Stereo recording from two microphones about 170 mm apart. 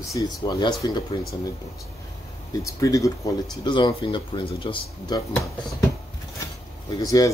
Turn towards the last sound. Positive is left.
turn(degrees=20)  # may be behind; listen again after turning